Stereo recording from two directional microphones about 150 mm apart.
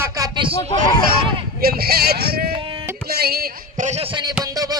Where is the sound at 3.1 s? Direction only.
90° right.